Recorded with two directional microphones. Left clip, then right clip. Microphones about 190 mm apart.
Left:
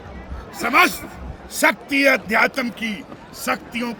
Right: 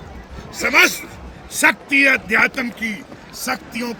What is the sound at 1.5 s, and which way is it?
A man's voice, 60° left (ahead or behind).